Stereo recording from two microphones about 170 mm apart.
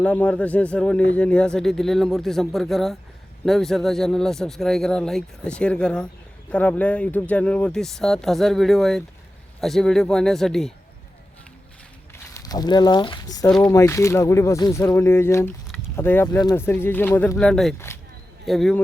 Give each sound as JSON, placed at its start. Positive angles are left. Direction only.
{"t": 0.0, "sound": "speech", "side_deg": 10}
{"t": 12.1, "sound": "speech", "side_deg": 20}
{"t": 17.7, "sound": "speech", "side_deg": 15}
{"t": 18.4, "sound": "speech", "side_deg": 0}